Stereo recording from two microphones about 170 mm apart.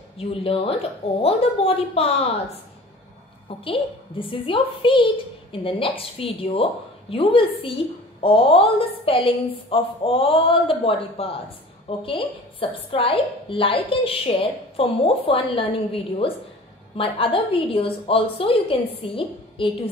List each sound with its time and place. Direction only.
0.2 s a woman's voice: 35° left (ahead or behind)
3.4 s a woman's voice: 30° left (ahead or behind)